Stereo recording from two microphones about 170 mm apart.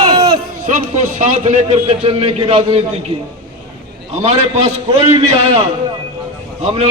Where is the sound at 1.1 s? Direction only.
45° right (ahead or behind).